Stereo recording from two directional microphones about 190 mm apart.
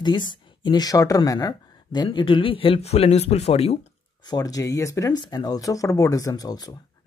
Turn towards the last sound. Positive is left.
turn(degrees=20)  # may be behind; listen again after turning